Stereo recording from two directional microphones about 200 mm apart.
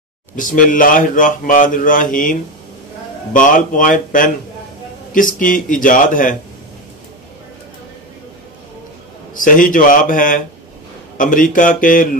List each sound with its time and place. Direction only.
0.4 s speech: 40° left (ahead or behind)
3.3 s speech: 40° left (ahead or behind)
9.3 s a man's voice: 40° left (ahead or behind)